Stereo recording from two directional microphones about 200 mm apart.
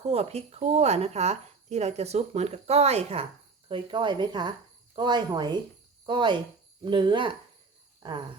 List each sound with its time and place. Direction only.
0.1 s speech: 30° right (ahead or behind)